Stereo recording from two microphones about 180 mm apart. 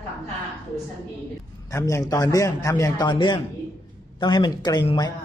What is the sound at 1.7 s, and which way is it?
A man's voice, 15° left (ahead or behind).